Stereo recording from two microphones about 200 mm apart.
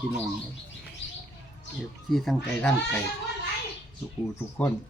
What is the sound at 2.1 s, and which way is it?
Speech, centre (ahead or behind).